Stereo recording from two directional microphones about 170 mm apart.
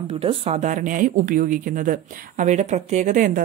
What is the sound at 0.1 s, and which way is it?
Speech, 35° right (ahead or behind).